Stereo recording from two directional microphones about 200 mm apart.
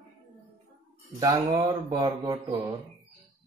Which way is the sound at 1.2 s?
20° right (ahead or behind).